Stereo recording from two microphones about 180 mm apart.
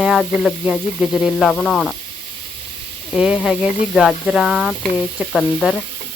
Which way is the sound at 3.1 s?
Centre (ahead or behind).